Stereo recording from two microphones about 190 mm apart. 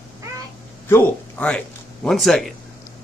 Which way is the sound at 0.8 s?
10° left (ahead or behind).